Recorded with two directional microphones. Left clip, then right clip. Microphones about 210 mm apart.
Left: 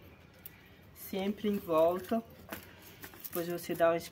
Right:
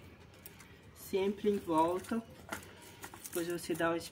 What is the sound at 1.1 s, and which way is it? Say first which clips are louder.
Speech: right 3 dB; 45° left (ahead or behind).